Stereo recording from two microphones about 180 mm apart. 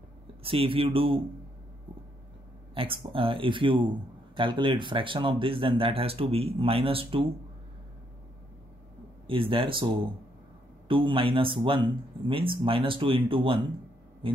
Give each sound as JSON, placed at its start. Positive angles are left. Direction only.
{"t": 0.4, "sound": "speech", "side_deg": -30}
{"t": 2.7, "sound": "speech", "side_deg": -30}
{"t": 9.3, "sound": "speech", "side_deg": -30}
{"t": 10.9, "sound": "speech", "side_deg": -30}
{"t": 14.2, "sound": "a sound", "side_deg": -30}